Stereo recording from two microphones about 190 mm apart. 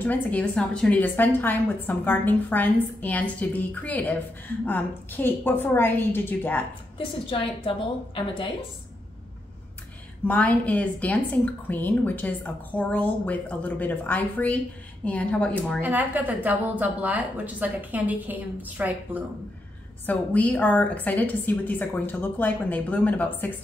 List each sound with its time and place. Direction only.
0.0 s a woman's voice: 10° left (ahead or behind)
7.0 s a woman's voice: 30° left (ahead or behind)
10.2 s a woman's voice: 10° left (ahead or behind)
15.8 s a woman's voice: 10° right (ahead or behind)
20.1 s a woman's voice: 10° left (ahead or behind)